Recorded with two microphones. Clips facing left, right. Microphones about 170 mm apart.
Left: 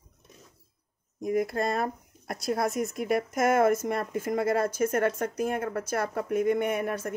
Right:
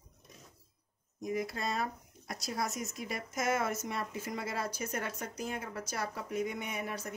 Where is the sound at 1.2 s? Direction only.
55° left (ahead or behind).